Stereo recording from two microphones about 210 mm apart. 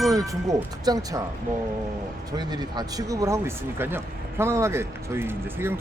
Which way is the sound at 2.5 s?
20° right (ahead or behind).